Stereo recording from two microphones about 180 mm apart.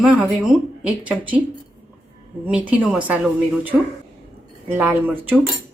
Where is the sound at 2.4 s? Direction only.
5° right (ahead or behind).